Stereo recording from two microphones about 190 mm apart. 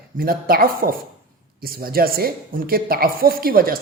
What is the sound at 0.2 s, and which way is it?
A man's voice, 50° right (ahead or behind).